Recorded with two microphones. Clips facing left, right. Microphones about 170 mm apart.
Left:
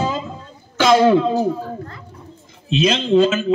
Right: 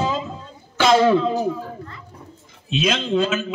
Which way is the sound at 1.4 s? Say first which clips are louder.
Left 3 dB; 40° left (ahead or behind).